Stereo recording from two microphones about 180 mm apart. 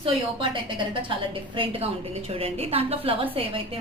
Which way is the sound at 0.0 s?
30° right (ahead or behind).